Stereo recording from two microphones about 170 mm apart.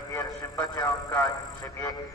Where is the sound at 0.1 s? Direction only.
20° left (ahead or behind).